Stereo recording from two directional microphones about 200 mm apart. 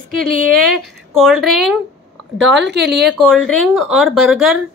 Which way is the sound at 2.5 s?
60° right (ahead or behind).